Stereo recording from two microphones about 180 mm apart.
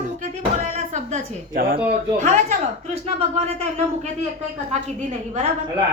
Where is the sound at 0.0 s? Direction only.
45° right (ahead or behind).